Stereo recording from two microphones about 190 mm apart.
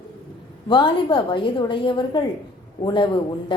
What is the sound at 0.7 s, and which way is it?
A woman's voice, 25° left (ahead or behind).